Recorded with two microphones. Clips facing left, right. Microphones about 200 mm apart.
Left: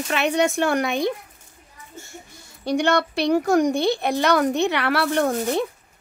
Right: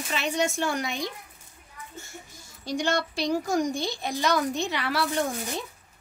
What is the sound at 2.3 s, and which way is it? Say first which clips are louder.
Speech: left 8 dB; 65° left (ahead or behind).